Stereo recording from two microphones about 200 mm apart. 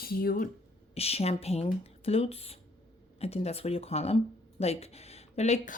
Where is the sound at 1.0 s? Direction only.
30° left (ahead or behind).